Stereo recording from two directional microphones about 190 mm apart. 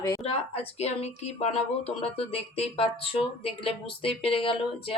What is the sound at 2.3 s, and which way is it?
Speech, 30° left (ahead or behind).